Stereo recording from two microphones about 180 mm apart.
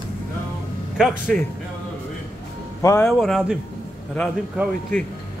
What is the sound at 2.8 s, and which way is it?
Speech, 15° left (ahead or behind).